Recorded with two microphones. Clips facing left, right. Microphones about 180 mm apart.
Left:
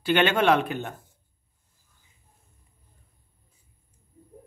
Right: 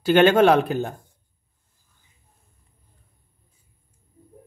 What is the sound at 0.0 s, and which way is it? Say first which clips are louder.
Speech: right 7 dB; 40° right (ahead or behind).